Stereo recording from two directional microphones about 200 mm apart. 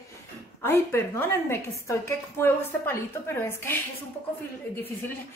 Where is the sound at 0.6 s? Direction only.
10° left (ahead or behind).